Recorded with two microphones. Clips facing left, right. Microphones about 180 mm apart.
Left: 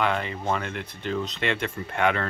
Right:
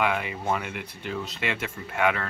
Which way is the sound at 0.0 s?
10° right (ahead or behind).